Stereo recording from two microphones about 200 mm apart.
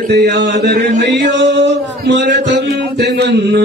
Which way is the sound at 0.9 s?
60° right (ahead or behind).